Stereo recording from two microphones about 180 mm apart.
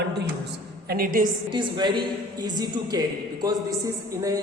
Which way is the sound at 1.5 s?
25° right (ahead or behind).